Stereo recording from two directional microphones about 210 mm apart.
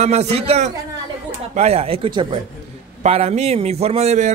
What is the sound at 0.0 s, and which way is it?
A man's voice, 30° right (ahead or behind).